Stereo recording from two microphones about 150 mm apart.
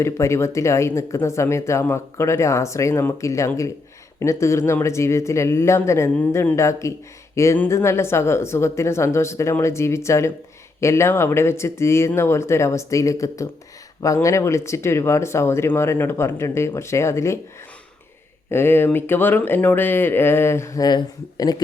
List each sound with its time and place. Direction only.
0.0 s speech: 20° left (ahead or behind)
18.4 s speech: 15° left (ahead or behind)